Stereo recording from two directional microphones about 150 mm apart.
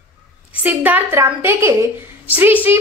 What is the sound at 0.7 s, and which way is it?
A woman's voice, 10° right (ahead or behind).